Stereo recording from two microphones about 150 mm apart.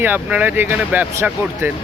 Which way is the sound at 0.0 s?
10° right (ahead or behind).